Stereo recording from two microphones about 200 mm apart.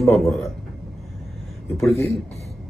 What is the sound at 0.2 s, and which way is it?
Speech, centre (ahead or behind).